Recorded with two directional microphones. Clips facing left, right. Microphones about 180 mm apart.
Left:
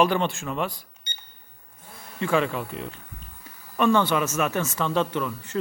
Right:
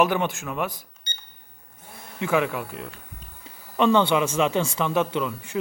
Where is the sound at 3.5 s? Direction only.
20° right (ahead or behind).